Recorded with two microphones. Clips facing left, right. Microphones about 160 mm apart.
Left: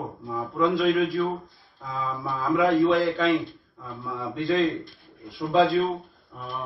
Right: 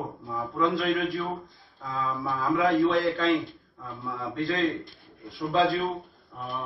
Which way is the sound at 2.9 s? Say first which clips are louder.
Left 2 dB; 15° left (ahead or behind).